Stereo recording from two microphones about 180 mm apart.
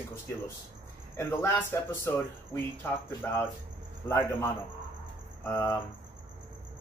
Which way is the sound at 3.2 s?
15° left (ahead or behind).